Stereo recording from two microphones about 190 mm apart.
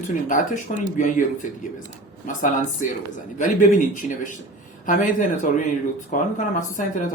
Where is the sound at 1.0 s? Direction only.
45° left (ahead or behind).